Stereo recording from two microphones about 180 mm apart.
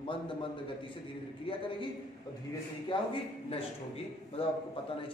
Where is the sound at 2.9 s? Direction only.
30° left (ahead or behind).